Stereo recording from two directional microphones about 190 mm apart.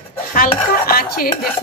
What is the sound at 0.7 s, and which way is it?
Dishes, 50° left (ahead or behind).